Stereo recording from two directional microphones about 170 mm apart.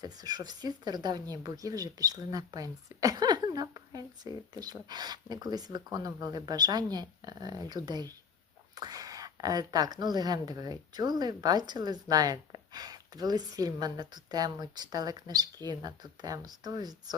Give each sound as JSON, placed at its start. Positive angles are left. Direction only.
{"t": 0.0, "sound": "speech", "side_deg": -25}